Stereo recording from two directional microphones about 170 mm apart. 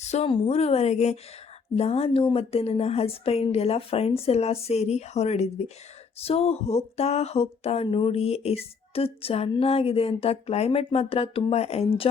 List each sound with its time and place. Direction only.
0.1 s speech: 35° left (ahead or behind)